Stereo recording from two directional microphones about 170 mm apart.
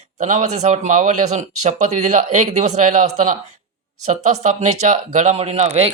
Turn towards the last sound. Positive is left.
turn(degrees=-40)  # may be behind; listen again after turning